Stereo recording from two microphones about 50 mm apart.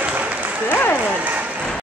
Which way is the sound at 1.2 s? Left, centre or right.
Right.